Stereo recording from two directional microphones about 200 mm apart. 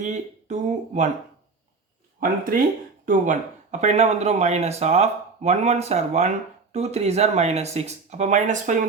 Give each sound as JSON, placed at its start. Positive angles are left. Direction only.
{"t": 0.0, "sound": "speech", "side_deg": -35}
{"t": 3.1, "sound": "speech", "side_deg": -40}